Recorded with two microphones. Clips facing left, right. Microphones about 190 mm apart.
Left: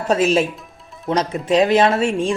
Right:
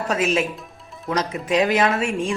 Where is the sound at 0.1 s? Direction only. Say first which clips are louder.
Left 6 dB; 30° left (ahead or behind).